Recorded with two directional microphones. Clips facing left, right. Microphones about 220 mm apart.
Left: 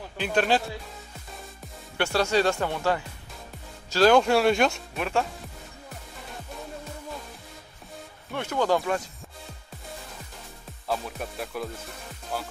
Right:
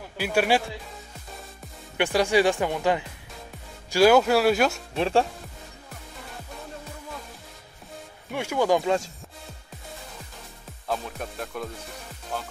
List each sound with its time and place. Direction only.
0.2 s speech: 10° right (ahead or behind)
2.0 s speech: 15° right (ahead or behind)
4.9 s speech: 30° right (ahead or behind)
8.3 s speech: 10° right (ahead or behind)
10.9 s speech: centre (ahead or behind)